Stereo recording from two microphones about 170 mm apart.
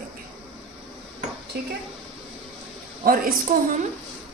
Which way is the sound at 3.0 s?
60° right (ahead or behind).